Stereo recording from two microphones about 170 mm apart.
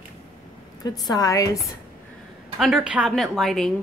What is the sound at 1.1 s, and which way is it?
Speech, 20° left (ahead or behind).